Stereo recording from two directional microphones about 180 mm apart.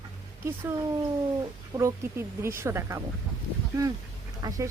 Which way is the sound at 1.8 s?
15° right (ahead or behind).